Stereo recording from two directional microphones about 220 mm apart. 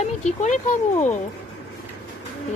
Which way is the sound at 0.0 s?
30° left (ahead or behind).